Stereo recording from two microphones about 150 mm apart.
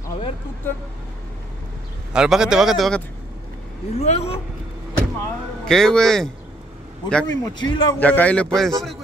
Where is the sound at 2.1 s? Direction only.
5° right (ahead or behind).